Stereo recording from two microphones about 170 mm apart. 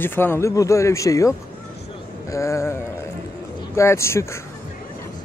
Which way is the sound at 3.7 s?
15° left (ahead or behind).